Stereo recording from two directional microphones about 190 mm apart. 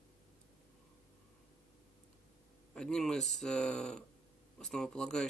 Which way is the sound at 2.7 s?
5° left (ahead or behind).